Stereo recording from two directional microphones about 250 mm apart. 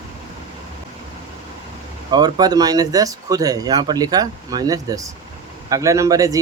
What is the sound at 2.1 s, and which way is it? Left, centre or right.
Speech, centre.